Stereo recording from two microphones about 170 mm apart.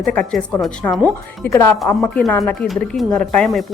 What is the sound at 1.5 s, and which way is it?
Speech, 15° left (ahead or behind).